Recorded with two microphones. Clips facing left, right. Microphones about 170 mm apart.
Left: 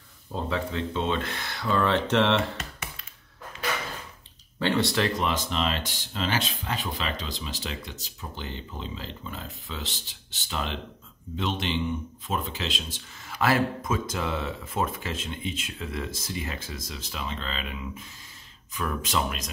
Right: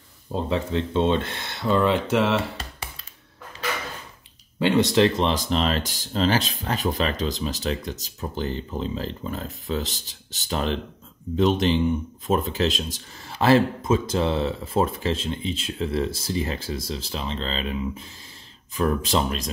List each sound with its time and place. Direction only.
0.3 s speech: 25° right (ahead or behind)
1.9 s speech: 10° right (ahead or behind)
2.5 s computer keyboard: 30° right (ahead or behind)
4.6 s speech: 20° right (ahead or behind)
5.3 s speech: 35° right (ahead or behind)